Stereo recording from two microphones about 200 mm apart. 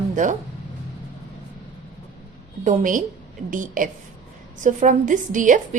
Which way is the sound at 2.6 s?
40° right (ahead or behind).